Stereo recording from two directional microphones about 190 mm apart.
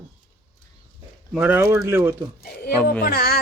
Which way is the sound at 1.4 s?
10° right (ahead or behind).